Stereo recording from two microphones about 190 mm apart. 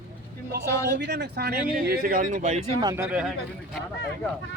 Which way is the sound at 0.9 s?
65° right (ahead or behind).